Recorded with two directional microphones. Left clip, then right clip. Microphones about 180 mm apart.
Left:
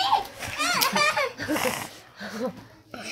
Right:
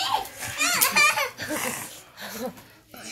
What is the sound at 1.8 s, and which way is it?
Dog, 40° left (ahead or behind).